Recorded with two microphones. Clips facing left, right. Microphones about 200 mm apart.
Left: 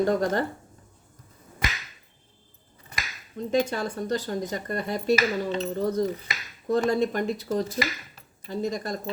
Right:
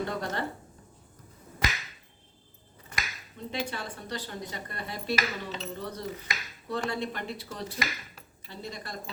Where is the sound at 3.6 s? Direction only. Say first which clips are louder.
Left 8 dB; 45° left (ahead or behind).